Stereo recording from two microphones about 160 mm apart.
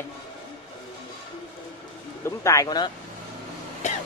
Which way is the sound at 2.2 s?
20° left (ahead or behind).